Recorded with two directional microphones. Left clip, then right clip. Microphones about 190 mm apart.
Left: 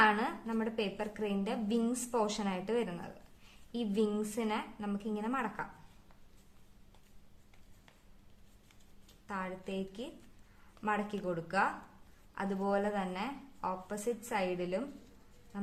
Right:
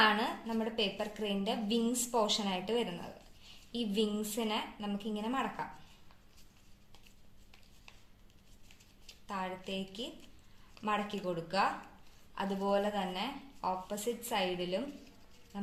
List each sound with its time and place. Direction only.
0.0 s a sound: 30° left (ahead or behind)
0.5 s a woman's voice: 20° left (ahead or behind)
9.2 s speech: 25° left (ahead or behind)